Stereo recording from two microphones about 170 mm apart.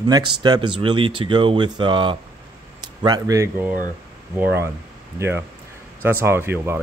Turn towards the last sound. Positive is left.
turn(degrees=-15)  # may be behind; listen again after turning